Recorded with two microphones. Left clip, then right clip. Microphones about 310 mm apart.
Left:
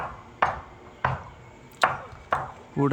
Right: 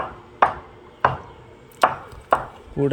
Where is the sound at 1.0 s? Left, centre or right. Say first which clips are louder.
Right 7 dB; right.